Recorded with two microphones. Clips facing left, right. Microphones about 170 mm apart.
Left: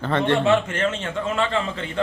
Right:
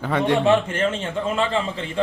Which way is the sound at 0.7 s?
30° right (ahead or behind).